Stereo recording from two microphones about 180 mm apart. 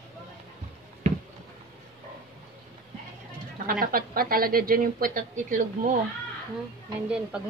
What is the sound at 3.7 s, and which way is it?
A woman's voice, 50° right (ahead or behind).